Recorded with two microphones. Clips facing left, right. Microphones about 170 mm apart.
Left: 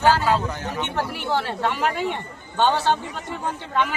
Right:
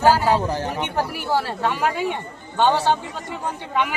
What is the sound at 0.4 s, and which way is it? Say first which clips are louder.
Speech: right 5 dB; 30° right (ahead or behind).